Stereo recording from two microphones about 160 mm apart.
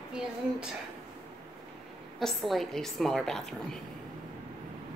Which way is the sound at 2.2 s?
Centre (ahead or behind).